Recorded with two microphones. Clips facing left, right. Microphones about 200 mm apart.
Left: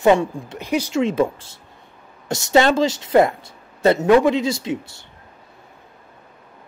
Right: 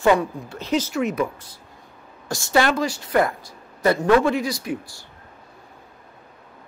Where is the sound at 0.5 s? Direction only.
15° left (ahead or behind).